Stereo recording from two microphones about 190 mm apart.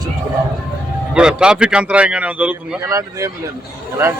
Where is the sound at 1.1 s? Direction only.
5° right (ahead or behind).